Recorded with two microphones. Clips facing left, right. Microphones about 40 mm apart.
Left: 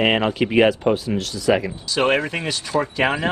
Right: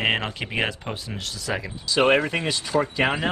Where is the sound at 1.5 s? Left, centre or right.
Left.